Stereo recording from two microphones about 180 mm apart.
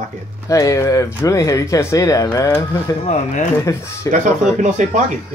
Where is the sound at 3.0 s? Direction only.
40° left (ahead or behind).